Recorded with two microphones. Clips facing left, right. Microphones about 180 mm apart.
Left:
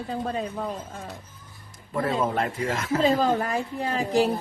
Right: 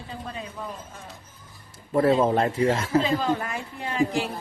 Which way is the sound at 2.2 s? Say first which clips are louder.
Right 5 dB; 30° right (ahead or behind).